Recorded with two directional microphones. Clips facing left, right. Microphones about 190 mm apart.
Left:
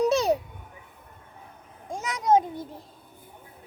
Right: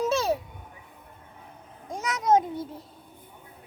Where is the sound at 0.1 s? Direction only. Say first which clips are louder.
Left 3 dB; 15° left (ahead or behind).